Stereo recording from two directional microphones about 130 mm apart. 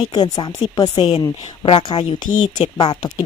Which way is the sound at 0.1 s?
35° left (ahead or behind).